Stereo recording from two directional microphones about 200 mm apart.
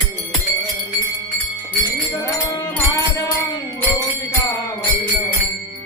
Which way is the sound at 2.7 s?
15° left (ahead or behind).